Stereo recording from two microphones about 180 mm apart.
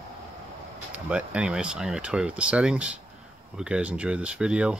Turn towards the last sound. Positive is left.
turn(degrees=-5)  # may be behind; listen again after turning